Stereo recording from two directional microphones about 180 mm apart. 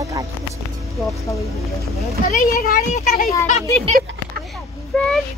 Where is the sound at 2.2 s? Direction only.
55° left (ahead or behind).